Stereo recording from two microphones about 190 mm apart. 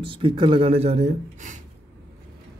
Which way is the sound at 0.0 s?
25° right (ahead or behind).